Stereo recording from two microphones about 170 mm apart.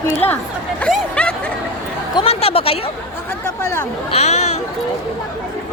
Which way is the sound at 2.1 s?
35° left (ahead or behind).